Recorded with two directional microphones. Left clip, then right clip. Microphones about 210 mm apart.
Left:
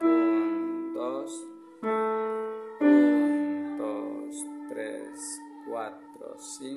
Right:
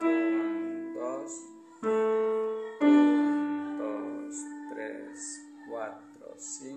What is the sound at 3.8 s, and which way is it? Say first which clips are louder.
Music: left 2 dB; 40° left (ahead or behind).